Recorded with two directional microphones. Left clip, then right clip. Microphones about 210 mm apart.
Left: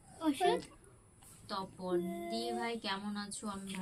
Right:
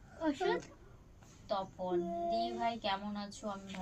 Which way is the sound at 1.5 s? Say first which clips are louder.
Right 2 dB; 30° right (ahead or behind).